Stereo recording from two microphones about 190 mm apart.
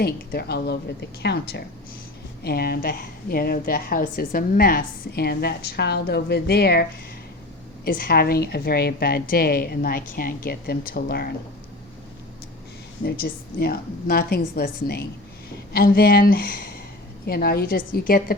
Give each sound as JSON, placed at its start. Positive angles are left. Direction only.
{"t": 0.0, "sound": "a woman's voice", "side_deg": 55}
{"t": 7.9, "sound": "a woman's voice", "side_deg": 50}
{"t": 13.1, "sound": "a woman's voice", "side_deg": 55}